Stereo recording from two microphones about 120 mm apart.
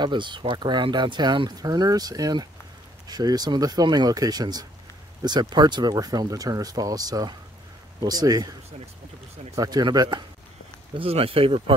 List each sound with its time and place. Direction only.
0.0 s speech: 40° right (ahead or behind)
9.6 s speech: 35° right (ahead or behind)
11.0 s speech: 55° right (ahead or behind)